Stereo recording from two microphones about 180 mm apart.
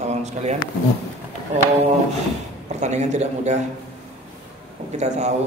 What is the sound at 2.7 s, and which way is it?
Speech, 40° right (ahead or behind).